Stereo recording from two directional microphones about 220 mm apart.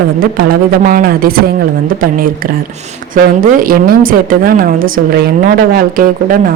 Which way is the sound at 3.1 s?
40° right (ahead or behind).